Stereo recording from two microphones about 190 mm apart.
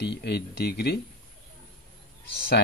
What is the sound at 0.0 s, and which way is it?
Speech, 60° left (ahead or behind).